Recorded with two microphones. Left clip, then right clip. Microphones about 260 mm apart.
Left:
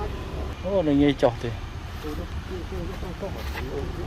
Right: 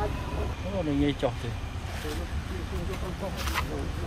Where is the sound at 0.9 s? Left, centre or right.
Centre.